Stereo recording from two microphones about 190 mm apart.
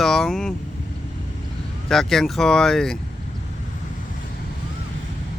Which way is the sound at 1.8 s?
Centre (ahead or behind).